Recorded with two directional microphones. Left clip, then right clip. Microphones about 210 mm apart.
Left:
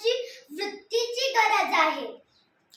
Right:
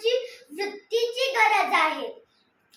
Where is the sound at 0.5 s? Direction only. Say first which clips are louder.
Right 2 dB; 5° left (ahead or behind).